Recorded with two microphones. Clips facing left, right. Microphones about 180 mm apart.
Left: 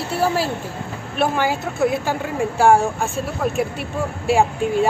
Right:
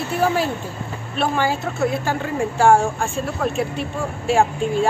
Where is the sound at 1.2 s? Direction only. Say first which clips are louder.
Left 1 dB; 10° left (ahead or behind).